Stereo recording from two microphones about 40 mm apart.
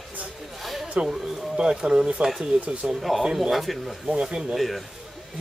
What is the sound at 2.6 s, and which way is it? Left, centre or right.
Speech, right.